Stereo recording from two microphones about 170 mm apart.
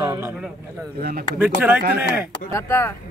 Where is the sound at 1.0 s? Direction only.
60° right (ahead or behind).